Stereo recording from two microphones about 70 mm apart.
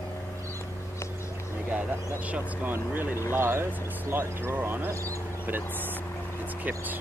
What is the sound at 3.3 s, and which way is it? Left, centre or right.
Speech, right.